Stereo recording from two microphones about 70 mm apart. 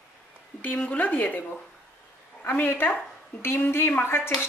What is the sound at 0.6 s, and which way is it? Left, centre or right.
Speech, left.